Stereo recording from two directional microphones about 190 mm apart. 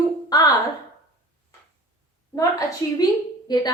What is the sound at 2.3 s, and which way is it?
A woman's voice, 15° left (ahead or behind).